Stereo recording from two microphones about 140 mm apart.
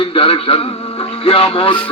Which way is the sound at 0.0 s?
40° left (ahead or behind).